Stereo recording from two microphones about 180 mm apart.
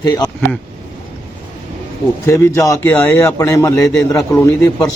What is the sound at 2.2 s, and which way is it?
Speech, 15° left (ahead or behind).